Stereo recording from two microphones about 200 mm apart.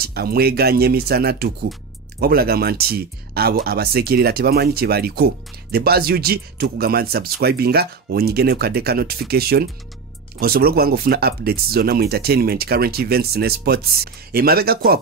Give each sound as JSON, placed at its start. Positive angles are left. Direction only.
{"t": 0.0, "sound": "speech", "side_deg": -50}